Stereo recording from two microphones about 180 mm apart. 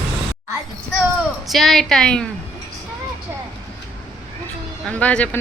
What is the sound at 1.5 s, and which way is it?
Speech, centre (ahead or behind).